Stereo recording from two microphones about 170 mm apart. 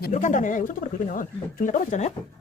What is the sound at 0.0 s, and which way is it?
Speech, 50° left (ahead or behind).